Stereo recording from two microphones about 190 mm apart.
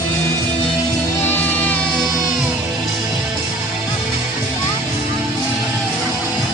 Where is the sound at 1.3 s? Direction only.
10° left (ahead or behind).